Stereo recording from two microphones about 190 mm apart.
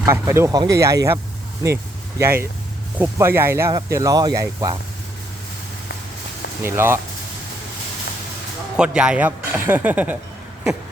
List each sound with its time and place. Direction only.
0.0 s speech: 15° right (ahead or behind)
6.6 s speech: 15° right (ahead or behind)
8.7 s speech: 5° right (ahead or behind)